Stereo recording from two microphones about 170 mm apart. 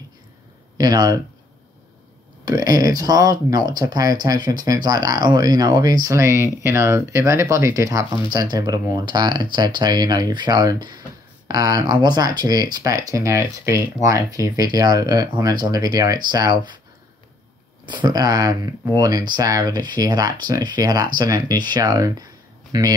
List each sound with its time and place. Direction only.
0.7 s speech: 20° right (ahead or behind)
2.4 s speech: 20° right (ahead or behind)
17.8 s speech: 25° right (ahead or behind)